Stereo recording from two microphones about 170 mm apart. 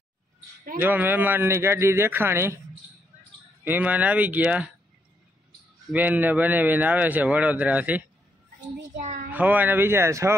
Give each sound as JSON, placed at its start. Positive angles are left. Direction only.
{"t": 0.7, "sound": "a man's voice", "side_deg": -10}
{"t": 3.6, "sound": "a man's voice", "side_deg": -10}
{"t": 5.9, "sound": "a man's voice", "side_deg": -10}
{"t": 9.0, "sound": "a child's voice", "side_deg": -45}
{"t": 9.3, "sound": "a man's voice", "side_deg": -10}